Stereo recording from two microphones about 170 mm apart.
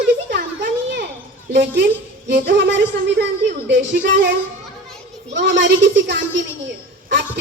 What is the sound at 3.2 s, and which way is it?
Speech, 90° right.